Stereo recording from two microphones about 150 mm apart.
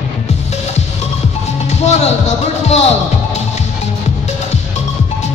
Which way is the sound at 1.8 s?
50° left (ahead or behind).